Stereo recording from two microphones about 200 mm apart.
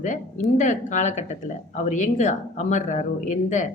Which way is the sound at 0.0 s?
40° left (ahead or behind).